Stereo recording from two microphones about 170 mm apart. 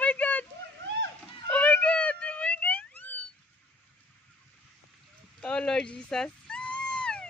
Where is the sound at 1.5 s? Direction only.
10° left (ahead or behind).